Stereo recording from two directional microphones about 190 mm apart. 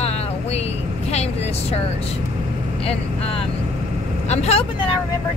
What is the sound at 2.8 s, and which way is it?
A woman's voice, 30° left (ahead or behind).